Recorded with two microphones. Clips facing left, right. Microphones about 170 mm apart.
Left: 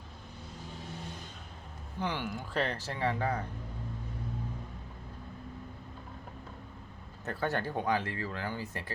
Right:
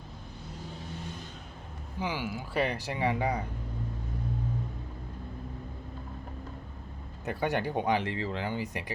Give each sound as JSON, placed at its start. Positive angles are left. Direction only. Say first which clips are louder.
{"t": 2.0, "sound": "speech", "louder": "right 1 dB", "side_deg": -5}
{"t": 7.3, "sound": "speech", "louder": "right 3 dB", "side_deg": -15}